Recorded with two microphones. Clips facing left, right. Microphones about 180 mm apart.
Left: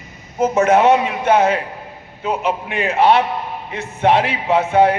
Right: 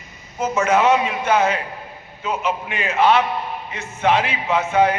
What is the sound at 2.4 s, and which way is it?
Speech, 60° left (ahead or behind).